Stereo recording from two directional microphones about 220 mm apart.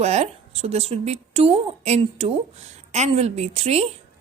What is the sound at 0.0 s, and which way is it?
A woman's voice, 30° right (ahead or behind).